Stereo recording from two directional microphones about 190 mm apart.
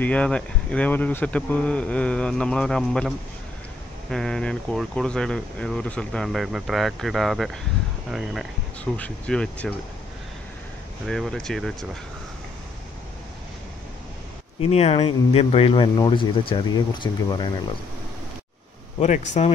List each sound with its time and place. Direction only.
0.0 s speech: 5° left (ahead or behind)
11.1 s speech: 5° left (ahead or behind)
14.6 s speech: 30° left (ahead or behind)
18.9 s speech: 40° left (ahead or behind)